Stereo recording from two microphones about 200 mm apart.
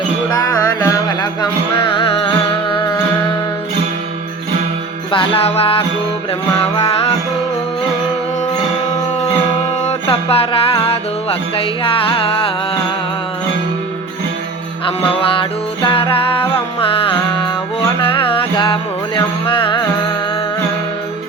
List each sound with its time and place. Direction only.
0.3 s music: 20° left (ahead or behind)
5.1 s music: 30° left (ahead or behind)
9.8 s music: 30° left (ahead or behind)
14.8 s music: 25° left (ahead or behind)